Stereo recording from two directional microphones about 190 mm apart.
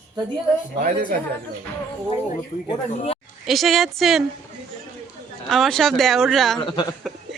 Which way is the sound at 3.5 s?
Centre (ahead or behind).